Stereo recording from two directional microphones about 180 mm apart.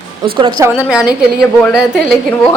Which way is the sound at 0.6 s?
5° right (ahead or behind).